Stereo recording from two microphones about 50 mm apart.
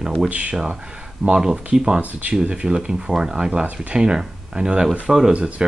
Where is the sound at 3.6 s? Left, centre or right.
Right.